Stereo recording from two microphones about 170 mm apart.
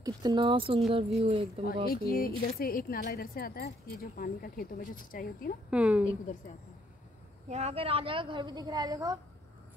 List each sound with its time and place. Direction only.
0.0 s speech: 25° right (ahead or behind)
1.9 s speech: 60° left (ahead or behind)
5.7 s a woman's voice: 10° right (ahead or behind)
7.4 s a woman's voice: 40° right (ahead or behind); by 9.2 s 20° right (ahead or behind)